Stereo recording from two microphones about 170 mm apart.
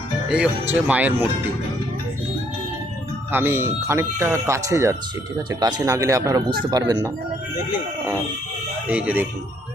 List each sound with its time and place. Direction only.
0.3 s speech: 5° right (ahead or behind)
3.3 s speech: 15° right (ahead or behind)
7.7 s speech: 10° right (ahead or behind)